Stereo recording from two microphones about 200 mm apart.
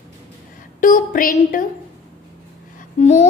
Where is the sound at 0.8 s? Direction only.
40° left (ahead or behind).